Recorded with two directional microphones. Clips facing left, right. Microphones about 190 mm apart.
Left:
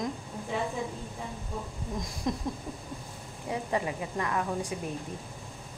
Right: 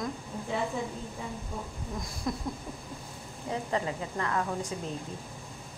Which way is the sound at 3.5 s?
15° left (ahead or behind).